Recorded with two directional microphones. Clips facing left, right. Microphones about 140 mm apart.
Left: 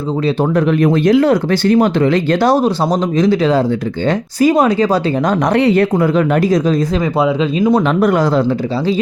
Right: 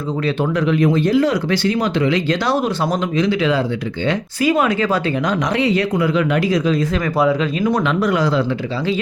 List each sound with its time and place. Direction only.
0.5 s speech: 55° left (ahead or behind)
2.6 s speech: 35° left (ahead or behind)
5.5 s speech: 60° left (ahead or behind); by 6.7 s 45° left (ahead or behind)
7.0 s speech: 20° left (ahead or behind)
7.9 s speech: 45° left (ahead or behind)